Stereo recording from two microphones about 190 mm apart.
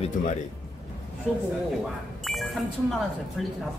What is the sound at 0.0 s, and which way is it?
Speech, 40° left (ahead or behind).